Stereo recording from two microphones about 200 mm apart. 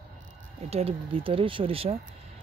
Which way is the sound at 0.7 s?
30° right (ahead or behind).